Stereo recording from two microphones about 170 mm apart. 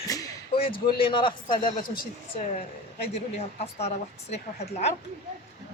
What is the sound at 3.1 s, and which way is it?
A woman's voice, 40° left (ahead or behind).